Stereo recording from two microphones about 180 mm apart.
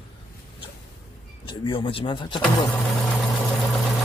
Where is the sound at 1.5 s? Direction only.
30° left (ahead or behind).